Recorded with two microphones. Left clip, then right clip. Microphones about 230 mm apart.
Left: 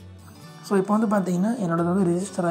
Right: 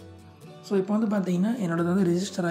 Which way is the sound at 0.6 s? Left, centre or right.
Centre.